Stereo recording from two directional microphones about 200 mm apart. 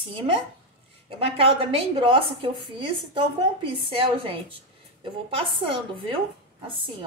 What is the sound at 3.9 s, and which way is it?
A woman's voice, 25° right (ahead or behind).